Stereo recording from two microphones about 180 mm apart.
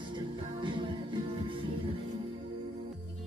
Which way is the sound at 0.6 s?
25° right (ahead or behind).